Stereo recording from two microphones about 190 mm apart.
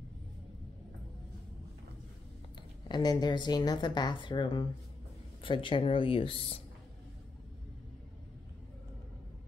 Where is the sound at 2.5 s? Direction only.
20° left (ahead or behind).